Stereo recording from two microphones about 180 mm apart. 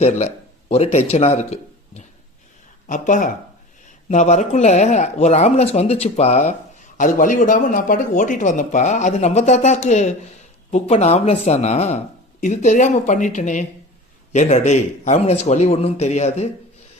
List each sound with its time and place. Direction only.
0.0 s a man's voice: 35° left (ahead or behind)